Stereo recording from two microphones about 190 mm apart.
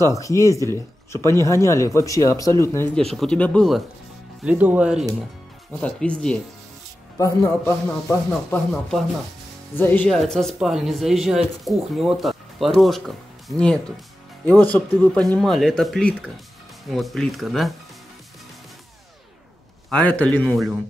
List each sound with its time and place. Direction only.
0.1 s speech: 15° left (ahead or behind)
3.0 s speech: centre (ahead or behind)
5.7 s speech: 5° left (ahead or behind)
7.2 s speech: 15° left (ahead or behind)
8.3 s speech: centre (ahead or behind)
19.9 s speech: 5° left (ahead or behind)